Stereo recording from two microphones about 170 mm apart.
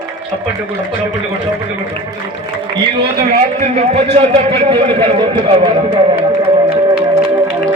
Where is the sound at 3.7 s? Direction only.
35° right (ahead or behind).